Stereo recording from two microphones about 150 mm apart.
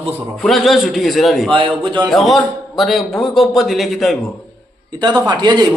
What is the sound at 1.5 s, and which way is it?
Speech, 35° right (ahead or behind).